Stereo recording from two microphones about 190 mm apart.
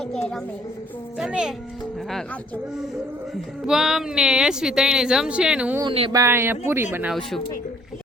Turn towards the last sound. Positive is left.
turn(degrees=0)  # may be behind; listen again after turning